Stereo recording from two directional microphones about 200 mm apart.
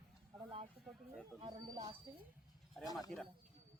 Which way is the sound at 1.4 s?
20° right (ahead or behind).